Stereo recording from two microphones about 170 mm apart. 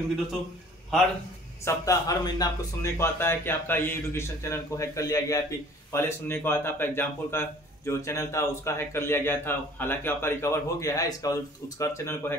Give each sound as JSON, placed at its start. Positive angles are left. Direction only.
{"t": 1.6, "sound": "speech", "side_deg": 15}